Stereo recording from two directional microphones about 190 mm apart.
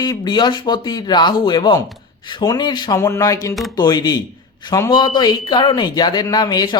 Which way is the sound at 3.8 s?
20° left (ahead or behind).